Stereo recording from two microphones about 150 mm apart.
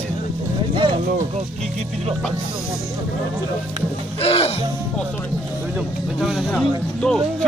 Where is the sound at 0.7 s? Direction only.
30° right (ahead or behind).